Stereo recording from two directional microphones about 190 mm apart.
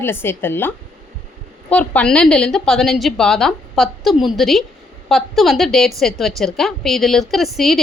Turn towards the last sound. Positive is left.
turn(degrees=0)  # may be behind; listen again after turning